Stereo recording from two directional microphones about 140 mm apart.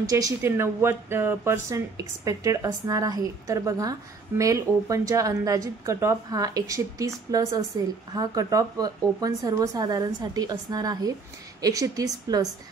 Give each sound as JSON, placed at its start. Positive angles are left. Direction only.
{"t": 0.0, "sound": "speech", "side_deg": -25}